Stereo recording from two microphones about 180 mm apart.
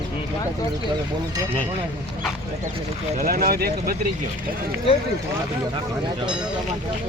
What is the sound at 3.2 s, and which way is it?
Speech, 55° right (ahead or behind).